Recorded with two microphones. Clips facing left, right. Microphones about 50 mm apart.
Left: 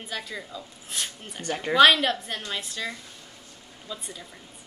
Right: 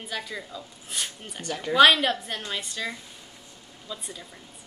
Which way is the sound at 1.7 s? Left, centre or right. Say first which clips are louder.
Even; centre.